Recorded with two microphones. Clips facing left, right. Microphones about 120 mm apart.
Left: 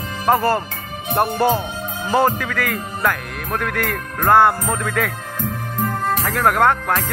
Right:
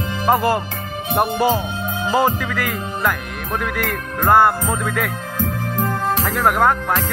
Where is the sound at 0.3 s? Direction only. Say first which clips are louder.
Even; 10° right (ahead or behind).